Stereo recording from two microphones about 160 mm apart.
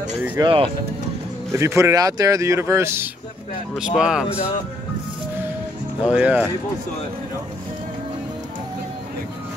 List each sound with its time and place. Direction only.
0.4 s speech: 35° right (ahead or behind)
1.6 s speech: 20° right (ahead or behind)
3.7 s speech: 5° right (ahead or behind)
6.0 s speech: 10° right (ahead or behind)